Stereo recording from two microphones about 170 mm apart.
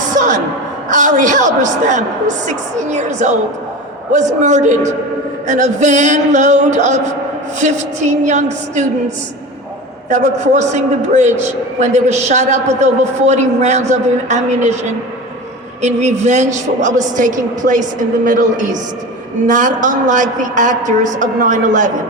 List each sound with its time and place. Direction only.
0.0 s a sound: 45° right (ahead or behind)
1.6 s a man's voice: 45° right (ahead or behind)
15.8 s a man's voice: 40° right (ahead or behind)